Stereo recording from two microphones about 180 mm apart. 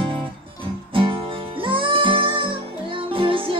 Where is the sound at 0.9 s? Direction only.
30° right (ahead or behind).